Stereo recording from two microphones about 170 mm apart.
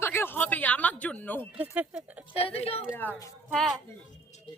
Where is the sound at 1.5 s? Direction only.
5° right (ahead or behind).